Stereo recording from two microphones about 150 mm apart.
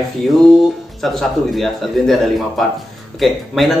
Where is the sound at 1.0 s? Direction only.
Centre (ahead or behind).